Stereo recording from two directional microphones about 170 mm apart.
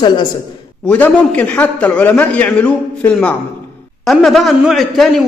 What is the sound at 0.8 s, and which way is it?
A man's voice, 10° left (ahead or behind).